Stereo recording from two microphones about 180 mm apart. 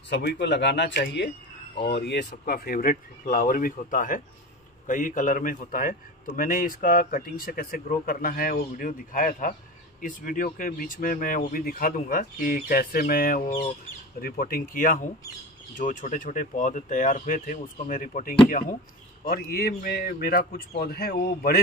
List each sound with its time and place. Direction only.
0.1 s a man's voice: 75° left (ahead or behind); by 21.5 s 55° left (ahead or behind)